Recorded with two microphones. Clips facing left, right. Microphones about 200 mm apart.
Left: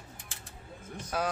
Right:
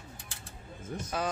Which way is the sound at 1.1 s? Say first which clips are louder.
Left 2 dB; 5° left (ahead or behind).